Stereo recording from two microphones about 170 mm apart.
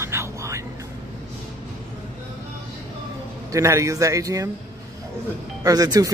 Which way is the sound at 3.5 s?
20° right (ahead or behind).